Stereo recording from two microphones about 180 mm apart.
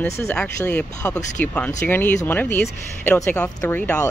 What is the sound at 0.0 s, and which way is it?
Speech, 10° left (ahead or behind).